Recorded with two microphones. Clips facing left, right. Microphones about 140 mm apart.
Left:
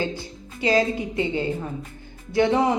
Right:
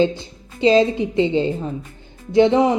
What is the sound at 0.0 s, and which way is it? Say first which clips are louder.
A woman's voice: right 9 dB; 20° right (ahead or behind).